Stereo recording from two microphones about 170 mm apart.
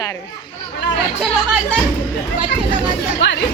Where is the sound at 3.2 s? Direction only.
90° left.